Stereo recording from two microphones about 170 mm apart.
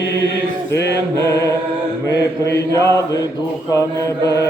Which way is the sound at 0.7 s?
90° left.